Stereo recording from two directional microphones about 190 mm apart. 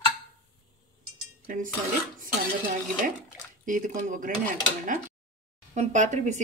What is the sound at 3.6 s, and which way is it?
Speech, 40° right (ahead or behind).